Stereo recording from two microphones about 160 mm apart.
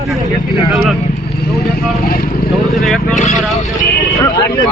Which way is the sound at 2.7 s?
Centre (ahead or behind).